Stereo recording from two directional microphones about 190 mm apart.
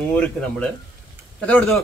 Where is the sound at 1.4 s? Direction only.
5° left (ahead or behind).